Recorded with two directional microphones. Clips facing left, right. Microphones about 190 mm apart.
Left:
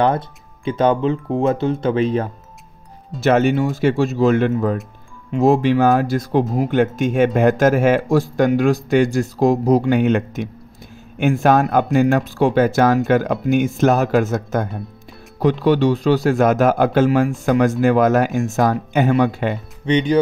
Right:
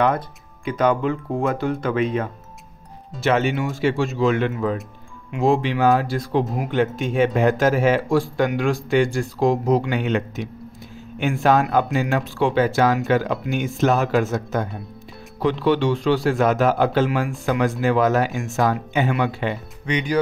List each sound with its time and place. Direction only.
0.7 s speech: 30° left (ahead or behind)
3.2 s a man's voice: 45° left (ahead or behind)
19.9 s speech: 25° left (ahead or behind)